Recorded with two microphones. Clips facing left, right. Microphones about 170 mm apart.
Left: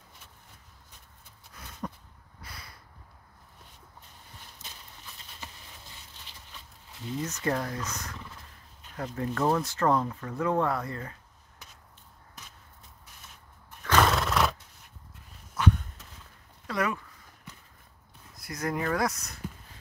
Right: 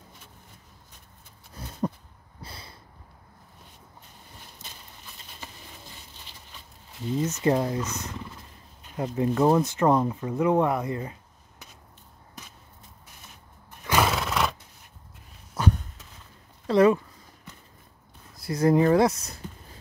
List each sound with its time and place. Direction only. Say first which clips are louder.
1.5 s a sound: right 9 dB; 30° right (ahead or behind)
7.2 s speech: right 7 dB; 20° right (ahead or behind)
13.8 s neigh: even; 10° right (ahead or behind)
15.5 s a sound: right 1 dB; 40° right (ahead or behind)
16.6 s speech: right 12 dB; 30° right (ahead or behind)
18.3 s speech: right 11 dB; 30° right (ahead or behind)